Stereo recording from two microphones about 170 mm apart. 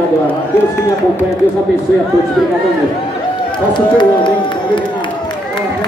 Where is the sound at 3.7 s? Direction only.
25° left (ahead or behind).